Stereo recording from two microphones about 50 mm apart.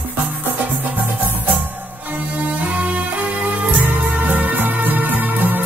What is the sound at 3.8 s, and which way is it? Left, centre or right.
Music, right.